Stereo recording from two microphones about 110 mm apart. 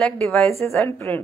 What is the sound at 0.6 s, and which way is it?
Speech, 25° left (ahead or behind).